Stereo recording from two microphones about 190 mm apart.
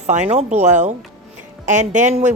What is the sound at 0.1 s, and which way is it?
A woman's voice, 35° right (ahead or behind).